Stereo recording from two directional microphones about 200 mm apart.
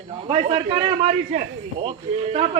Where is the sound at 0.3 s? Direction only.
30° right (ahead or behind).